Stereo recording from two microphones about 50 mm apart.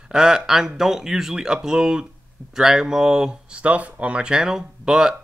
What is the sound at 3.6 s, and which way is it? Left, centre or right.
Speech, right.